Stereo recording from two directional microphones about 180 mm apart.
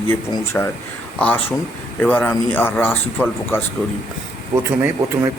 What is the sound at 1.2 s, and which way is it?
A man's voice, 10° left (ahead or behind).